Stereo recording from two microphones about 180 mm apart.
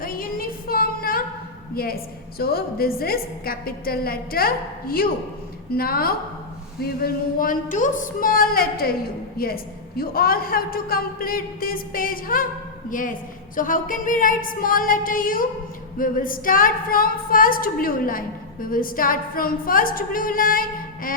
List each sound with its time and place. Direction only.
0.0 s music: 55° left (ahead or behind)
1.7 s a woman's voice: 55° left (ahead or behind)